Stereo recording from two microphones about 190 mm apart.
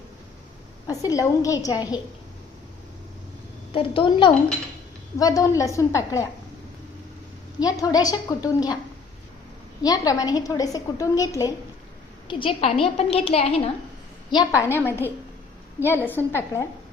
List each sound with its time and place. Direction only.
0.9 s a woman's voice: 20° left (ahead or behind)
3.7 s a woman's voice: 25° left (ahead or behind)
7.6 s a woman's voice: 20° left (ahead or behind)
9.8 s a woman's voice: 20° left (ahead or behind)
14.3 s a woman's voice: 20° left (ahead or behind)